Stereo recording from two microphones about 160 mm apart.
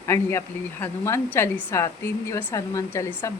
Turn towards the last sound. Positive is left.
turn(degrees=15)  # may be behind; listen again after turning